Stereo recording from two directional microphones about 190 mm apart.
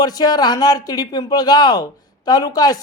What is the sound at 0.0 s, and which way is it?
Speech, 20° left (ahead or behind).